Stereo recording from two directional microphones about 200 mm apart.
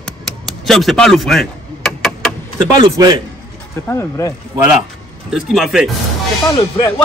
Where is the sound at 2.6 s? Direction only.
20° right (ahead or behind).